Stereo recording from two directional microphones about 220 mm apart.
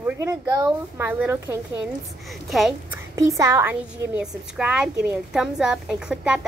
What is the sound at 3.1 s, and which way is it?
A woman's voice, 15° right (ahead or behind).